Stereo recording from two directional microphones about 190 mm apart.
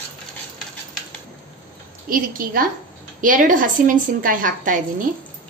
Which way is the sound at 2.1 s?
45° right (ahead or behind).